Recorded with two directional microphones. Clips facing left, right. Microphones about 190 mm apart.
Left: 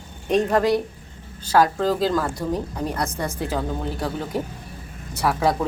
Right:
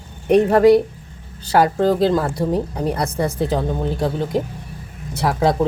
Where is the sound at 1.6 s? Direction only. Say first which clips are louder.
Right 4 dB; 30° right (ahead or behind).